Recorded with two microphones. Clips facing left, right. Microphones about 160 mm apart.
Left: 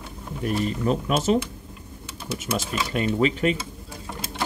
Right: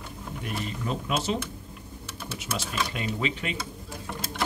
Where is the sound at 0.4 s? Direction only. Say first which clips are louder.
Left 9 dB; 45° left (ahead or behind).